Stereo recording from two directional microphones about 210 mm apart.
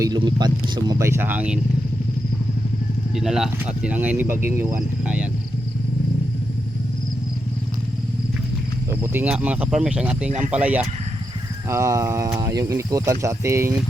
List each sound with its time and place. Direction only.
0.0 s speech: 20° right (ahead or behind)
3.2 s speech: centre (ahead or behind)
8.9 s speech: 10° right (ahead or behind)
10.2 s speech: 35° right (ahead or behind)
10.5 s speech: 5° right (ahead or behind)